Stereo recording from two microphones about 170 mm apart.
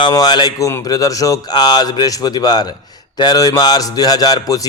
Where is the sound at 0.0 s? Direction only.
25° left (ahead or behind).